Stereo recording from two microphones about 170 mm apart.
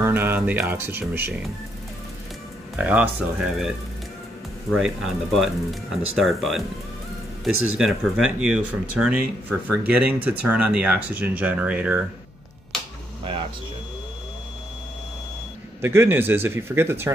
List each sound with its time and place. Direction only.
0.0 s speech: 15° right (ahead or behind)
2.7 s speech: 10° right (ahead or behind)
4.7 s speech: centre (ahead or behind)
15.8 s speech: 15° right (ahead or behind)